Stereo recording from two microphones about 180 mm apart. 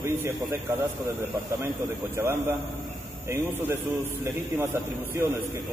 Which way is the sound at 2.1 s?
15° right (ahead or behind).